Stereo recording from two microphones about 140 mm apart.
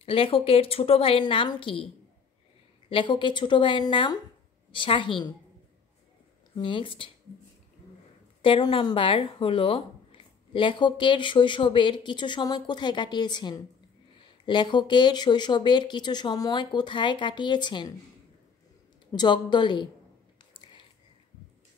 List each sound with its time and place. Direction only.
0.0 s speech: 40° left (ahead or behind)
2.9 s speech: 35° left (ahead or behind)
6.5 s speech: 35° left (ahead or behind)
8.4 s speech: 35° left (ahead or behind)
19.1 s speech: 35° left (ahead or behind)